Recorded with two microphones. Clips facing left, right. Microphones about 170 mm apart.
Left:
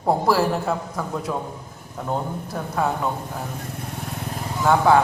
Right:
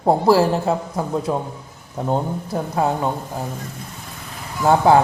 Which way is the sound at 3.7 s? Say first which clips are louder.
Left 5 dB; 60° left (ahead or behind).